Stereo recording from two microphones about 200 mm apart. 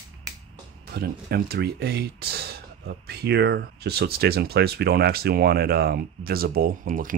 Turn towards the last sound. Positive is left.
turn(degrees=-45)  # may be behind; listen again after turning